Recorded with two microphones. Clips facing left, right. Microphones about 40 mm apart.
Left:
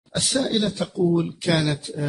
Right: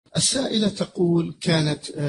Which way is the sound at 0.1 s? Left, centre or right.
Centre.